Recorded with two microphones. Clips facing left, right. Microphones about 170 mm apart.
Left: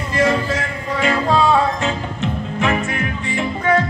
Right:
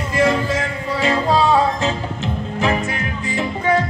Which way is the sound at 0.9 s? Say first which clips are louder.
Even; 30° right (ahead or behind).